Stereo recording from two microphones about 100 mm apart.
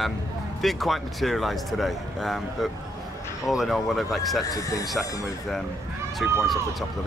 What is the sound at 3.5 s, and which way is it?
Speech, centre (ahead or behind).